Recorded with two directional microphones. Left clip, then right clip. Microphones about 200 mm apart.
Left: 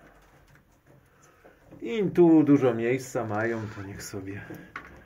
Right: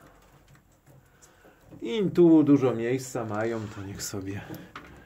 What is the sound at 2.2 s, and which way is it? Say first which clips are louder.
Speech: even; 10° right (ahead or behind).